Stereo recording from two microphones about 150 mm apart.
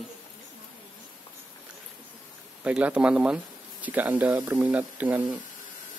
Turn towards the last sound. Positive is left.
turn(degrees=-10)  # may be behind; listen again after turning